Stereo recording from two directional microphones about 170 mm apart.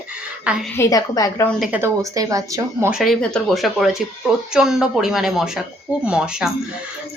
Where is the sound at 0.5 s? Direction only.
5° right (ahead or behind).